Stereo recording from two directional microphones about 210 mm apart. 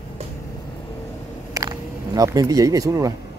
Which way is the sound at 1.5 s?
15° right (ahead or behind).